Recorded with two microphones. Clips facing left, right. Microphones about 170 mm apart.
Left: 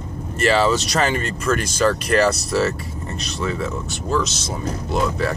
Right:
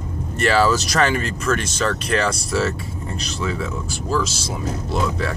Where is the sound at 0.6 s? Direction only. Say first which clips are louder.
Right 1 dB; 25° left (ahead or behind).